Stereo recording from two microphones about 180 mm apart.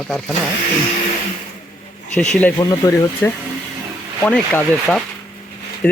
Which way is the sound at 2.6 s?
20° left (ahead or behind).